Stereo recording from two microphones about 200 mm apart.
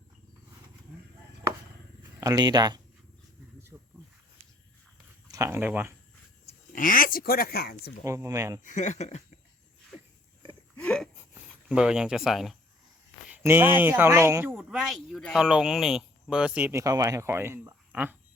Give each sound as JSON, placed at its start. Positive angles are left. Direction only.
{"t": 2.2, "sound": "speech", "side_deg": -20}
{"t": 3.7, "sound": "snake", "side_deg": -10}
{"t": 5.3, "sound": "speech", "side_deg": -15}
{"t": 6.4, "sound": "speech", "side_deg": 45}
{"t": 8.0, "sound": "speech", "side_deg": -15}
{"t": 8.6, "sound": "speech", "side_deg": 35}
{"t": 10.8, "sound": "gasp", "side_deg": 5}
{"t": 13.3, "sound": "speech", "side_deg": -10}